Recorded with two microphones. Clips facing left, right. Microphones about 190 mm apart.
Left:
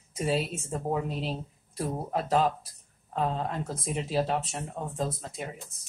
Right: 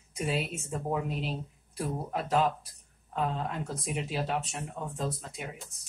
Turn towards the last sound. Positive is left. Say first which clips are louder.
# left 3 dB
turn(degrees=40)  # may be behind; listen again after turning